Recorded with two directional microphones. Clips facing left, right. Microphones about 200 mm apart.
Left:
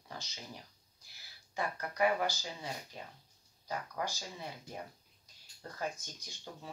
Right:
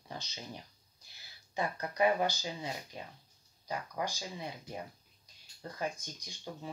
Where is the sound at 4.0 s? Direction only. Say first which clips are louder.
Right 2 dB; 15° right (ahead or behind).